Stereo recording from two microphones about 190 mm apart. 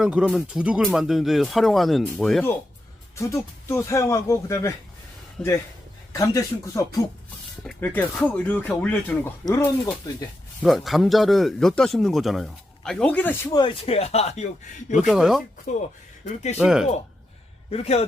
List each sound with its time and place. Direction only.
0.0 s speech: 5° right (ahead or behind)
3.2 s speech: 15° left (ahead or behind)
9.5 s speech: 20° left (ahead or behind)
10.6 s speech: centre (ahead or behind); by 14.4 s 35° left (ahead or behind)
14.9 s speech: centre (ahead or behind)
15.7 s a man's voice: 40° left (ahead or behind)
16.6 s speech: 5° right (ahead or behind)
17.7 s a man's voice: 30° left (ahead or behind)